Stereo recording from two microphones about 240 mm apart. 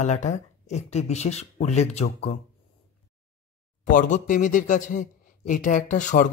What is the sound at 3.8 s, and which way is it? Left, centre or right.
Speech, left.